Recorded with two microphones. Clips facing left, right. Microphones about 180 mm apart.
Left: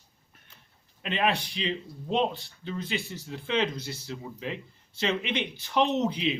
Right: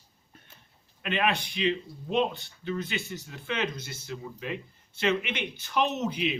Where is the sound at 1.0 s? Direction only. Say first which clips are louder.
Even; 30° left (ahead or behind).